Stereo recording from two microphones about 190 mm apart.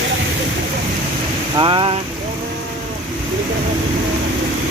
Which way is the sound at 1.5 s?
25° right (ahead or behind).